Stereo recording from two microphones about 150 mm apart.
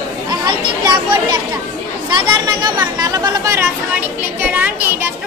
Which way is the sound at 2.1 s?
30° right (ahead or behind).